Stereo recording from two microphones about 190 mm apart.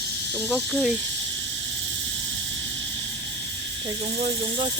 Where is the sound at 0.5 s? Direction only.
5° right (ahead or behind).